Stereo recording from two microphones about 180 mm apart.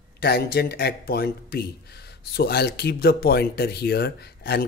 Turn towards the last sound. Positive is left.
turn(degrees=65)  # may be behind; listen again after turning